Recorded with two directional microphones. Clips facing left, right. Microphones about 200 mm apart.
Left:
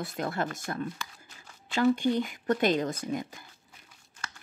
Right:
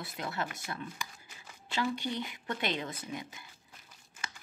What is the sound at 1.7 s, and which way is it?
Speech, 45° left (ahead or behind).